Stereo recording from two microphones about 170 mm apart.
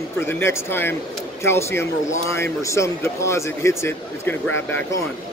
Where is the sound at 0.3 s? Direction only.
15° left (ahead or behind).